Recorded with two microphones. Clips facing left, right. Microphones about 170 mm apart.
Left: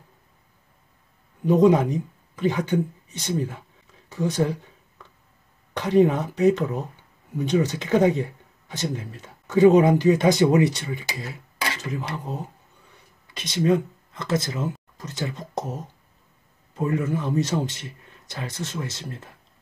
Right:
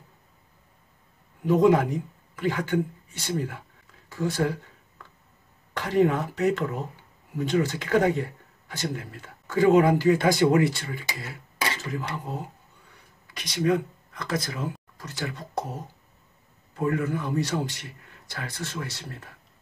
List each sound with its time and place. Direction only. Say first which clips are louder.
1.4 s speech: left 2 dB; 20° left (ahead or behind)
5.8 s speech: left 4 dB; 20° left (ahead or behind)
13.3 s speech: left 3 dB; 25° left (ahead or behind)
16.7 s speech: left 1 dB; 20° left (ahead or behind)